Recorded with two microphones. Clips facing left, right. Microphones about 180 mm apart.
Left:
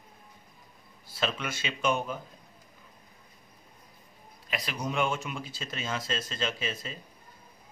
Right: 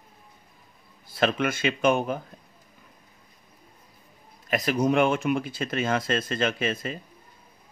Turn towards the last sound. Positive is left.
turn(degrees=-60)  # may be behind; listen again after turning